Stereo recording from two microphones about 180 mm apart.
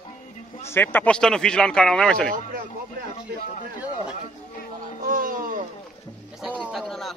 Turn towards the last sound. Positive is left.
turn(degrees=0)  # may be behind; listen again after turning